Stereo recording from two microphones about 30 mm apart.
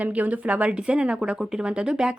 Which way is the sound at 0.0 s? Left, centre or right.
Right.